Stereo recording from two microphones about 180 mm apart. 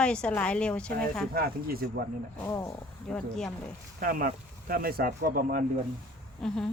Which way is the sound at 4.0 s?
55° right (ahead or behind).